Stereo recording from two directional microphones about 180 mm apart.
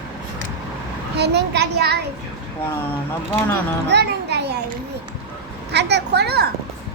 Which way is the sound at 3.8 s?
65° right (ahead or behind).